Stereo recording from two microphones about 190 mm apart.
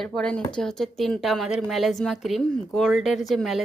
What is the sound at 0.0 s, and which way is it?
Speech, 5° left (ahead or behind).